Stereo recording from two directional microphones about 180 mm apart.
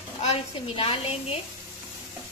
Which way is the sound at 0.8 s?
30° left (ahead or behind).